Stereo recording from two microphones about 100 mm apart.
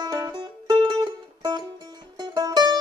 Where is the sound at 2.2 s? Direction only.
40° right (ahead or behind).